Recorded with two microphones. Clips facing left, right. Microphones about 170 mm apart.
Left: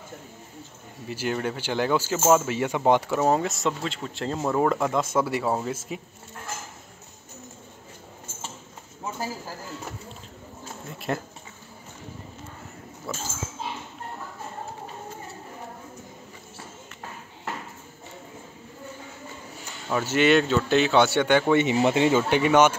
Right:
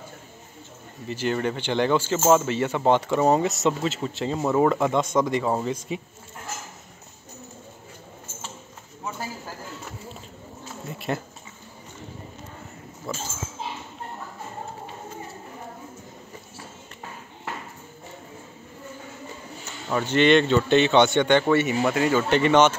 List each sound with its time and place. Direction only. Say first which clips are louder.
1.0 s speech: right 2 dB; 10° left (ahead or behind)
10.9 s speech: right 1 dB; centre (ahead or behind)
13.1 s speech: right 2 dB; centre (ahead or behind)
19.9 s speech: right 2 dB; 5° left (ahead or behind)
21.5 s speech: left 1 dB; 20° left (ahead or behind)
22.3 s speech: right 3 dB; 10° left (ahead or behind)